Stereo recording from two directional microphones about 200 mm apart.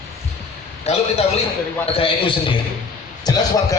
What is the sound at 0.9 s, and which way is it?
A man's voice, 35° left (ahead or behind).